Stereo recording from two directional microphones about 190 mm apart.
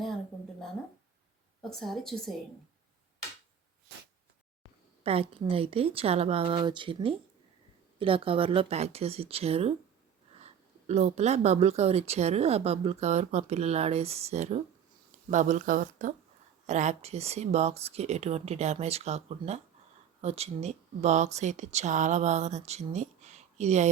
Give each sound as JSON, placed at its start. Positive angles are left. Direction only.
{"t": 1.7, "sound": "a woman's voice", "side_deg": 0}
{"t": 5.0, "sound": "speech", "side_deg": -30}